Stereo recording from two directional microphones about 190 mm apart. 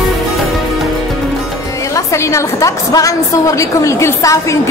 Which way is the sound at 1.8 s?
15° left (ahead or behind).